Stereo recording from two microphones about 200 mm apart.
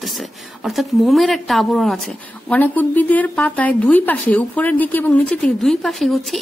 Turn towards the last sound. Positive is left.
turn(degrees=0)  # may be behind; listen again after turning